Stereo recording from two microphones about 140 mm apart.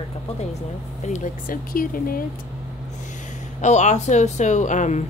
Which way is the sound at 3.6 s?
55° left (ahead or behind).